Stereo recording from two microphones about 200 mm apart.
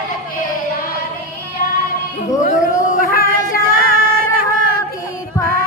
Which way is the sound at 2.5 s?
45° left (ahead or behind).